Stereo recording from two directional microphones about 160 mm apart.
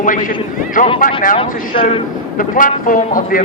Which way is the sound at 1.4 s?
35° left (ahead or behind).